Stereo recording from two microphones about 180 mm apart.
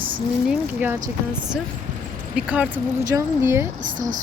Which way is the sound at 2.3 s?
5° right (ahead or behind).